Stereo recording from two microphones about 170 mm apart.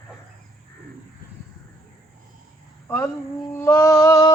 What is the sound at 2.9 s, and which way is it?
Speech, 10° left (ahead or behind).